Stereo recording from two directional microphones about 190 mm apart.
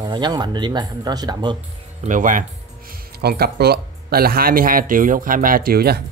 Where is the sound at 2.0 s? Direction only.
45° right (ahead or behind).